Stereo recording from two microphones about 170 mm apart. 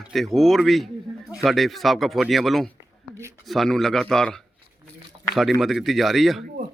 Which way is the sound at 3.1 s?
15° right (ahead or behind).